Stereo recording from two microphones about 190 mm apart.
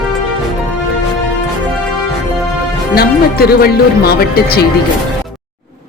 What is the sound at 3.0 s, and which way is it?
Speech, 55° left (ahead or behind).